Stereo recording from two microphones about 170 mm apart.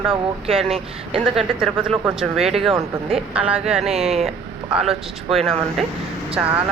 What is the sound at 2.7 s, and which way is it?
Speech, 35° right (ahead or behind).